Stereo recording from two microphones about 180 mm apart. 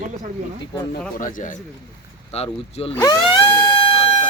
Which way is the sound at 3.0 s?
20° left (ahead or behind).